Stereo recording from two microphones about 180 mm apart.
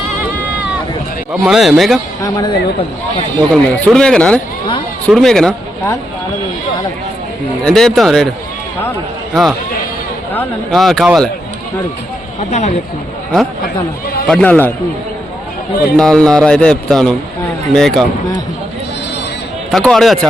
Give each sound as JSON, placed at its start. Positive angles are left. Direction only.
{"t": 1.3, "sound": "speech", "side_deg": 0}
{"t": 2.2, "sound": "speech", "side_deg": 20}
{"t": 3.5, "sound": "speech", "side_deg": 5}
{"t": 7.6, "sound": "speech", "side_deg": 5}
{"t": 9.3, "sound": "speech", "side_deg": 0}
{"t": 12.4, "sound": "speech", "side_deg": 40}
{"t": 14.3, "sound": "a man's voice", "side_deg": 5}
{"t": 16.0, "sound": "speech", "side_deg": 5}
{"t": 19.7, "sound": "speech", "side_deg": 5}